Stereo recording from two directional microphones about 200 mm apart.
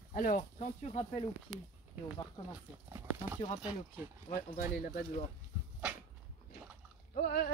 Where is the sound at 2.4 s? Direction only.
30° left (ahead or behind).